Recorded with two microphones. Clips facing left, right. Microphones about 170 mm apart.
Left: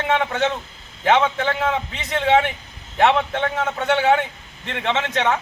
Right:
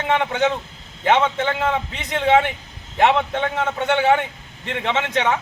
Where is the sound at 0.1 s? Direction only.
10° right (ahead or behind).